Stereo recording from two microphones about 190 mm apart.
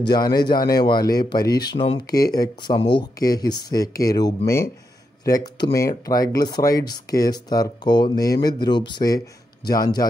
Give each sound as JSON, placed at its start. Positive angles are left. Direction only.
{"t": 0.0, "sound": "speech", "side_deg": 20}